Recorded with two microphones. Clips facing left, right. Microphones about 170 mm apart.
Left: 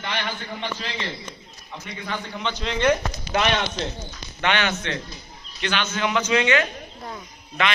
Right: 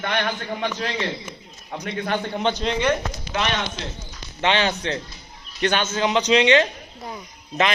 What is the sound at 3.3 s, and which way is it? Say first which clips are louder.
Speech: left 3 dB; 50° left (ahead or behind).